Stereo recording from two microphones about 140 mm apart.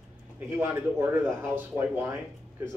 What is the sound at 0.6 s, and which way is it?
A man's voice, 20° right (ahead or behind).